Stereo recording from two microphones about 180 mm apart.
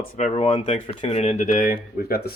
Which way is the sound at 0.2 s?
35° left (ahead or behind).